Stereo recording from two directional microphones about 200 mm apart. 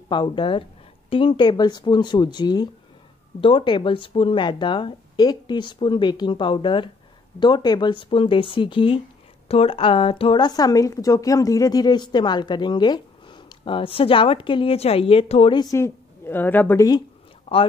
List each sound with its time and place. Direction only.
0.1 s speech: 25° left (ahead or behind)
17.5 s speech: 30° left (ahead or behind)